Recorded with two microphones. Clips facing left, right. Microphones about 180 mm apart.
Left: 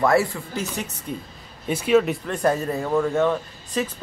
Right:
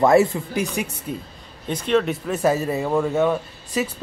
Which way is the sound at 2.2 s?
5° right (ahead or behind).